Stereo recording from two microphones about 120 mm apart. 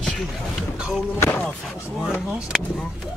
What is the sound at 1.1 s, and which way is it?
Speech, 20° left (ahead or behind).